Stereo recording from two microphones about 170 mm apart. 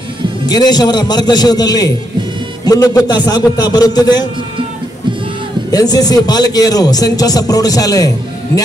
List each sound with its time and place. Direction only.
0.5 s a man's voice: 25° left (ahead or behind)
5.7 s a man's voice: 20° left (ahead or behind)